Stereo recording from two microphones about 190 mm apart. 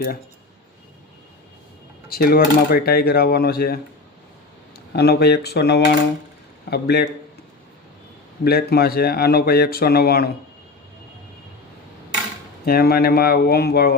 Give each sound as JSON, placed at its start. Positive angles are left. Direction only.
{"t": 2.0, "sound": "speech", "side_deg": 50}
{"t": 4.9, "sound": "speech", "side_deg": 60}
{"t": 8.4, "sound": "speech", "side_deg": 55}
{"t": 12.6, "sound": "speech", "side_deg": 55}